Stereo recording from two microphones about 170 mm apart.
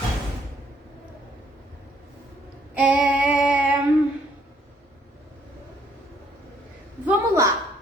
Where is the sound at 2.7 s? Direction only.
10° right (ahead or behind).